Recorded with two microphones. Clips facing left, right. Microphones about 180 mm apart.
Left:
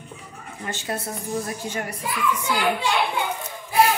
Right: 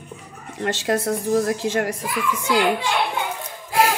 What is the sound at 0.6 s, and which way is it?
A child's voice, 90° right.